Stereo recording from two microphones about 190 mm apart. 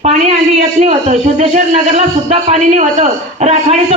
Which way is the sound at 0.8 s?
35° right (ahead or behind).